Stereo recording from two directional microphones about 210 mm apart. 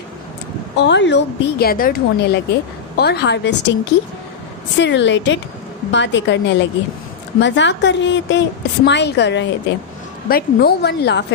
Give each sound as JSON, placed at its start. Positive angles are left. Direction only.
{"t": 0.8, "sound": "a woman's voice", "side_deg": 55}
{"t": 4.8, "sound": "a woman's voice", "side_deg": 60}
{"t": 10.2, "sound": "a woman's voice", "side_deg": 45}